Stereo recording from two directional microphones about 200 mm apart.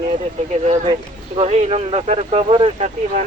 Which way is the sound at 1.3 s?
35° right (ahead or behind).